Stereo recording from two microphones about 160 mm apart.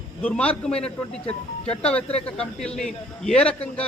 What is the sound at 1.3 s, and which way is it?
Speech, 40° left (ahead or behind).